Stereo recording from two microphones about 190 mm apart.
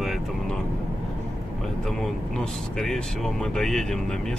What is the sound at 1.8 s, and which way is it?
Speech, 5° left (ahead or behind).